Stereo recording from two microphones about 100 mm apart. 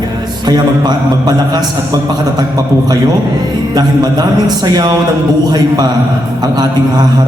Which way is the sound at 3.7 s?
40° right (ahead or behind).